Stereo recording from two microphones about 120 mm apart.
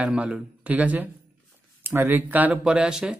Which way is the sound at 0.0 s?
10° right (ahead or behind).